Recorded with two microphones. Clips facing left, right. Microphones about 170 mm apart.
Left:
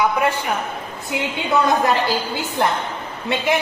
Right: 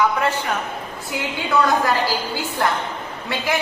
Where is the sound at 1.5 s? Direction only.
25° left (ahead or behind).